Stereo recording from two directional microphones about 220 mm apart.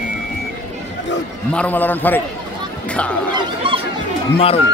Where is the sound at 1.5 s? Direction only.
5° left (ahead or behind).